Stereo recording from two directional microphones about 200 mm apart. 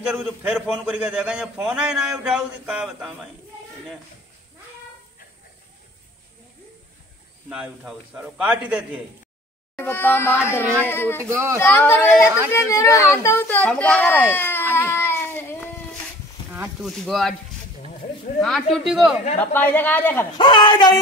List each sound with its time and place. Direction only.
0.0 s a man's voice: 10° right (ahead or behind)
7.4 s a man's voice: 5° right (ahead or behind)
9.8 s speech: 10° left (ahead or behind)
11.2 s speech: 15° right (ahead or behind)
11.5 s speech: 10° left (ahead or behind)
16.8 s a man's voice: centre (ahead or behind)
18.4 s a man's voice: centre (ahead or behind)
19.5 s speech: 10° left (ahead or behind)
20.3 s speech: 25° left (ahead or behind)